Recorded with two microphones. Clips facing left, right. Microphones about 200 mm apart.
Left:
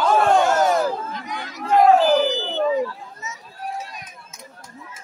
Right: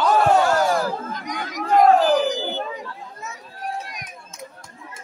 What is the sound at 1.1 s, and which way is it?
Chatter, 45° right (ahead or behind).